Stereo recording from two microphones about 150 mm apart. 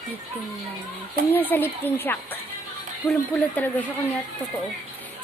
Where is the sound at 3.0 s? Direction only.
Centre (ahead or behind).